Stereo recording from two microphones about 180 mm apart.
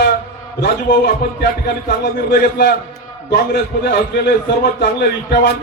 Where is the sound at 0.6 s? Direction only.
65° left (ahead or behind).